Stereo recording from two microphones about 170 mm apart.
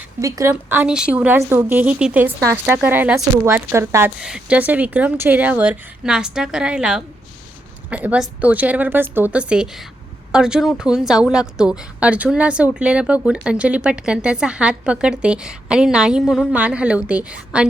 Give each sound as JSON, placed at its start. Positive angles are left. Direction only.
{"t": 0.2, "sound": "a woman's voice", "side_deg": -20}
{"t": 4.2, "sound": "a woman's voice", "side_deg": -5}